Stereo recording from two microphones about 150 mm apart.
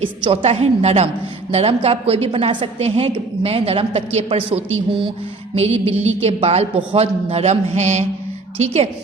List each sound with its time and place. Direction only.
0.0 s a woman's voice: 40° right (ahead or behind)